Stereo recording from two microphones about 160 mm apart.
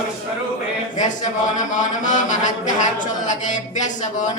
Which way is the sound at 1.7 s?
50° left (ahead or behind).